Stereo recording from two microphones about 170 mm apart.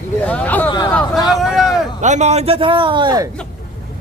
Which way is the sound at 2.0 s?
45° right (ahead or behind).